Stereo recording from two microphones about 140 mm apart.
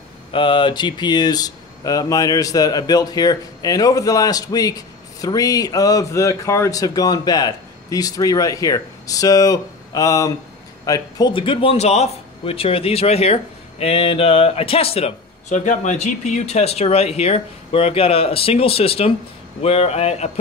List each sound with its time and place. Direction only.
0.3 s speech: 35° left (ahead or behind)
15.5 s speech: 65° left (ahead or behind); by 20.2 s 50° left (ahead or behind)